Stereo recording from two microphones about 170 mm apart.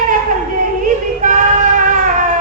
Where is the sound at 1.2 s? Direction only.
50° right (ahead or behind).